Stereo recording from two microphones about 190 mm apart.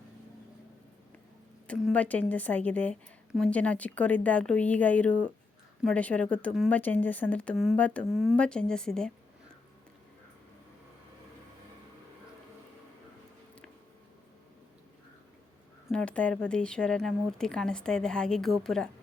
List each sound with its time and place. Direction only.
1.6 s a woman's voice: 5° left (ahead or behind)
15.9 s a woman's voice: 5° left (ahead or behind)